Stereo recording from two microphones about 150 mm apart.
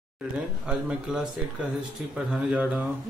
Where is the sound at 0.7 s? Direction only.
5° right (ahead or behind).